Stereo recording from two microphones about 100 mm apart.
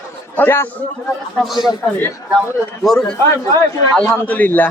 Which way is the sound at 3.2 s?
30° left (ahead or behind).